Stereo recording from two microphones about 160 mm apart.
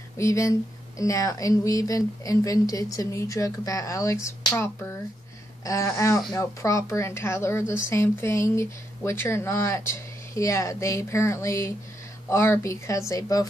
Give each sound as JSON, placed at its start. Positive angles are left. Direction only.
{"t": 0.2, "sound": "speech", "side_deg": 20}